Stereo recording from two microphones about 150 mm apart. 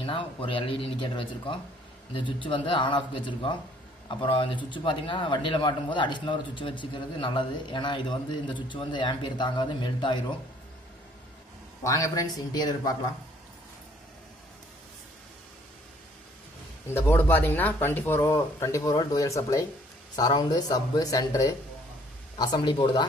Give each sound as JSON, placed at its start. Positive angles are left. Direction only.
{"t": 0.0, "sound": "speech", "side_deg": 35}
{"t": 11.8, "sound": "speech", "side_deg": 20}
{"t": 16.9, "sound": "speech", "side_deg": 15}